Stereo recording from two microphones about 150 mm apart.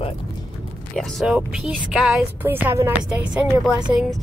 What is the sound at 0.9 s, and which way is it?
Speech, centre (ahead or behind).